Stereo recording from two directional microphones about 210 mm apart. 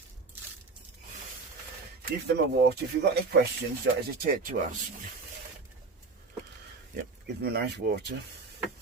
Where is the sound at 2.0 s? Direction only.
50° right (ahead or behind).